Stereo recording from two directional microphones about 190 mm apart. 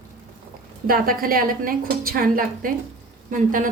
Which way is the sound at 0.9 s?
50° right (ahead or behind).